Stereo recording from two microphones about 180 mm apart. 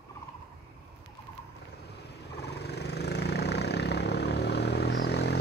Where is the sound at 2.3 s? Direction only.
65° left (ahead or behind).